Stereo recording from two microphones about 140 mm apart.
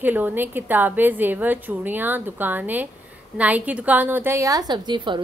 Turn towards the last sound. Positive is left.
turn(degrees=-35)  # may be behind; listen again after turning